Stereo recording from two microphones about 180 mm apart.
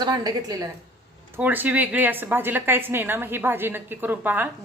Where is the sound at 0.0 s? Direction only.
20° right (ahead or behind).